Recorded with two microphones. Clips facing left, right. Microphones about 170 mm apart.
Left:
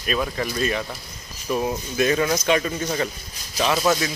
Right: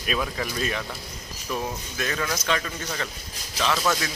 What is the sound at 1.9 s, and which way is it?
Speech, 20° left (ahead or behind).